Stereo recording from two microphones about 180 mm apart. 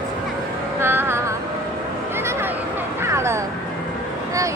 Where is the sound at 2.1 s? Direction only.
15° right (ahead or behind).